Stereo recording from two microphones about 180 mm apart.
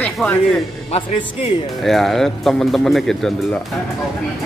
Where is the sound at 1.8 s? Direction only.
Centre (ahead or behind).